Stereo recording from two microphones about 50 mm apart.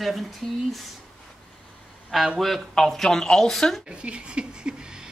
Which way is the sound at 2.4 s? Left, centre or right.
Centre.